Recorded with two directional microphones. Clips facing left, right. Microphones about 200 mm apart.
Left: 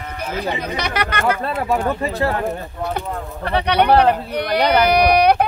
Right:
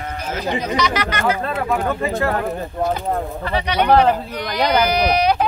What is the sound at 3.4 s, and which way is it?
Speech, 60° left (ahead or behind).